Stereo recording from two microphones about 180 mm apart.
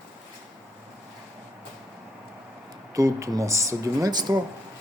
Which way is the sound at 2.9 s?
15° right (ahead or behind).